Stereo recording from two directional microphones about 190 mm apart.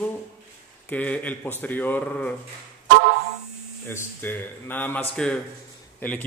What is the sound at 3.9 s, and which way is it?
A man's voice, 10° left (ahead or behind).